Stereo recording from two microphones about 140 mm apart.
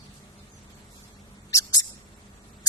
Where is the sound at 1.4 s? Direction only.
25° left (ahead or behind).